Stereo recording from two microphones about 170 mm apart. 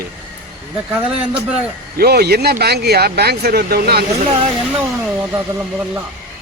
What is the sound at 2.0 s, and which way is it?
Speech, 70° right (ahead or behind).